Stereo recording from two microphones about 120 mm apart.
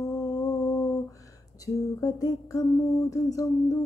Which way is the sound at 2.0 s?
30° left (ahead or behind).